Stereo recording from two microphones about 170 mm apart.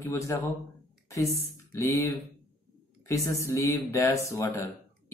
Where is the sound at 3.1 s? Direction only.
15° left (ahead or behind).